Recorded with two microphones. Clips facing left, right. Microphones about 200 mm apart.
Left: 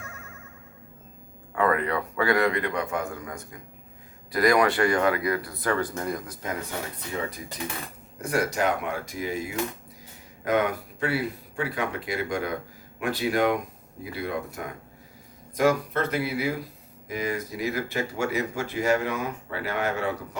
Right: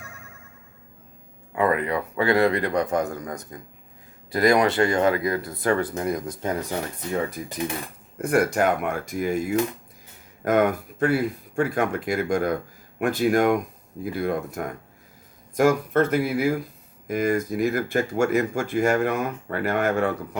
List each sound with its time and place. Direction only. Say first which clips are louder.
1.5 s a man's voice: right 2 dB; 20° right (ahead or behind); by 3.4 s 40° right (ahead or behind)
4.3 s speech: right 2 dB; 25° right (ahead or behind)
8.2 s speech: right 5 dB; 55° right (ahead or behind)